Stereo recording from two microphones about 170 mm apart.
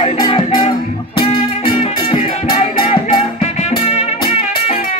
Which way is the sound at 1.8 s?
35° left (ahead or behind).